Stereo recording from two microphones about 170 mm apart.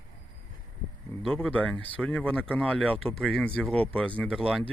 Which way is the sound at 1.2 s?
5° left (ahead or behind).